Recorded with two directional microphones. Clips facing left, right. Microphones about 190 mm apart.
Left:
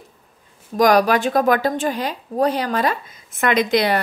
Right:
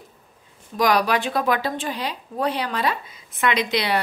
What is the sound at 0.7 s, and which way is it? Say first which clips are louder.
A woman's voice: left 5 dB; 45° left (ahead or behind).